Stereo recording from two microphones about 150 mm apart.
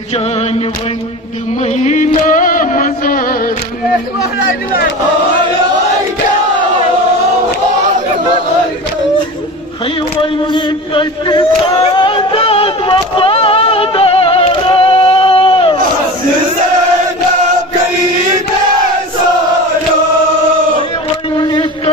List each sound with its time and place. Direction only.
1.8 s music: 55° left (ahead or behind)
10.5 s chant: 30° left (ahead or behind)
11.8 s a sound: 35° left (ahead or behind)
21.4 s vehicle: 30° left (ahead or behind)